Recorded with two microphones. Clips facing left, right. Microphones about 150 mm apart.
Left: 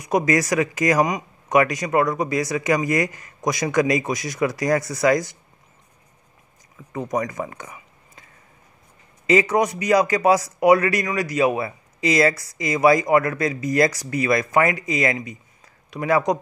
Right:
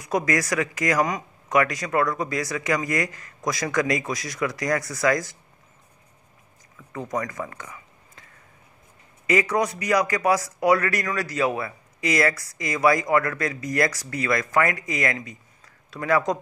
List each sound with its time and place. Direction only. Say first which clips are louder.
0.0 s speech: left 4 dB; 20° left (ahead or behind)
6.9 s speech: left 4 dB; 20° left (ahead or behind)
9.3 s speech: left 4 dB; 25° left (ahead or behind)